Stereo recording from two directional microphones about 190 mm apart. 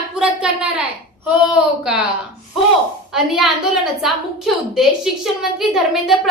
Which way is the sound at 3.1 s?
Centre (ahead or behind).